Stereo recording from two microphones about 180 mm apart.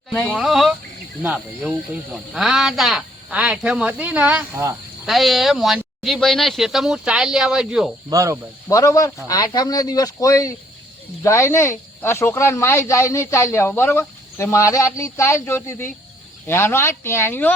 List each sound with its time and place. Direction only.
0.3 s speech: centre (ahead or behind)
8.1 s speech: 15° right (ahead or behind)
8.6 s speech: 15° left (ahead or behind)